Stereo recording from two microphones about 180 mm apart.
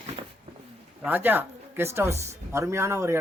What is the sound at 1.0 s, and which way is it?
Speech, 10° right (ahead or behind).